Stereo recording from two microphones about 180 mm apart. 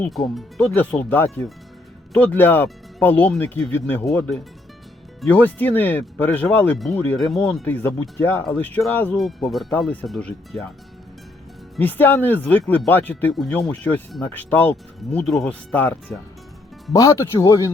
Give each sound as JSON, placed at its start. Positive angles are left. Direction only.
{"t": 0.0, "sound": "speech", "side_deg": 0}
{"t": 11.8, "sound": "speech", "side_deg": 10}